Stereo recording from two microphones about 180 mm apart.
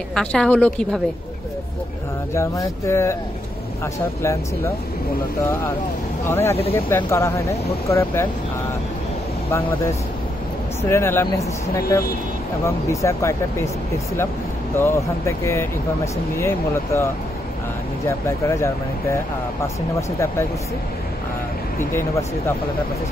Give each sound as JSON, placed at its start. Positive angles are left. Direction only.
{"t": 0.1, "sound": "a woman's voice", "side_deg": 5}
{"t": 2.3, "sound": "speech", "side_deg": 15}
{"t": 6.2, "sound": "speech", "side_deg": 15}
{"t": 9.5, "sound": "speech", "side_deg": 15}
{"t": 12.6, "sound": "speech", "side_deg": 15}
{"t": 14.8, "sound": "speech", "side_deg": 15}
{"t": 20.0, "sound": "speech", "side_deg": 15}